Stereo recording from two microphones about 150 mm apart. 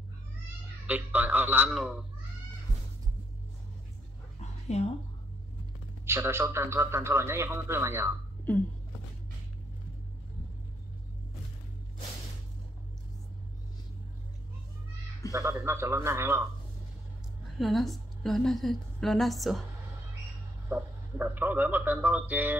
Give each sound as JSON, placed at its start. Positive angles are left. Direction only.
{"t": 0.8, "sound": "a man's voice", "side_deg": -10}
{"t": 4.4, "sound": "dog", "side_deg": 45}
{"t": 6.0, "sound": "a man's voice", "side_deg": -15}
{"t": 15.3, "sound": "a man's voice", "side_deg": -20}
{"t": 17.6, "sound": "a woman's voice", "side_deg": 0}
{"t": 20.7, "sound": "a man's voice", "side_deg": -10}